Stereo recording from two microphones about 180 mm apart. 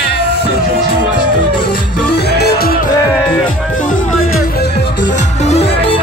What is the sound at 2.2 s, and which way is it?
Music, 60° left (ahead or behind).